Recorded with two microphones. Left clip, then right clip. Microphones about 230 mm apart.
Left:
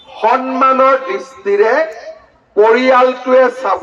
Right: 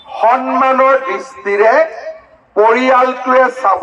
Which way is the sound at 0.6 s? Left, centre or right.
Right.